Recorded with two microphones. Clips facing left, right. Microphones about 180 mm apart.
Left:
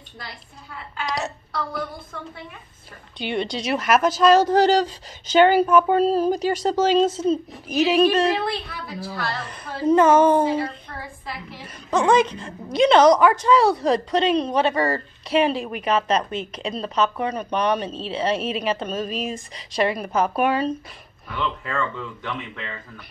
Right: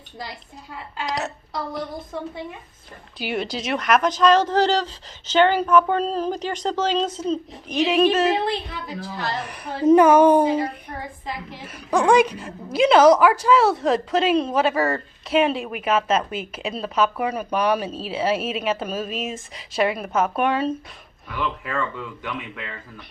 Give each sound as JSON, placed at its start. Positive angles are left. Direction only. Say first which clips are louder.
{"t": 1.0, "sound": "a woman's voice", "louder": "even", "side_deg": 0}
{"t": 3.2, "sound": "speech", "louder": "left 1 dB", "side_deg": -5}
{"t": 8.4, "sound": "a woman's voice", "louder": "right 2 dB", "side_deg": -20}